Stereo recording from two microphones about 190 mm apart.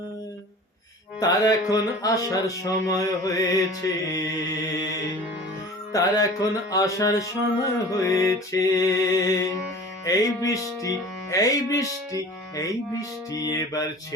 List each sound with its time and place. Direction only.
1.2 s music: 20° left (ahead or behind)
5.9 s music: 20° left (ahead or behind)